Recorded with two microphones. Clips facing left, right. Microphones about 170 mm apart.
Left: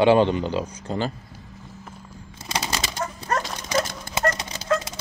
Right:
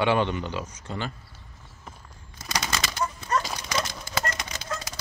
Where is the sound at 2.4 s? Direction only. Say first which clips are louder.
Left 2 dB; 30° left (ahead or behind).